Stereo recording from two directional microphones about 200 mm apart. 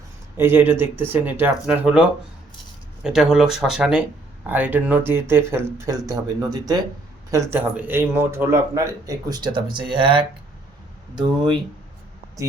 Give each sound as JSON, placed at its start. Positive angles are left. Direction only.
{"t": 0.3, "sound": "speech", "side_deg": -10}